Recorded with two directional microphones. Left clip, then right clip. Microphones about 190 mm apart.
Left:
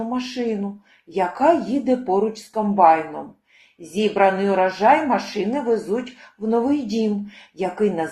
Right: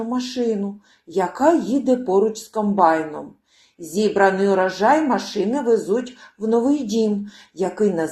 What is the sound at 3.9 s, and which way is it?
Speech, 30° right (ahead or behind).